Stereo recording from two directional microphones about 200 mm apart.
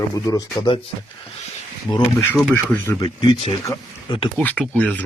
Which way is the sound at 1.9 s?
10° left (ahead or behind).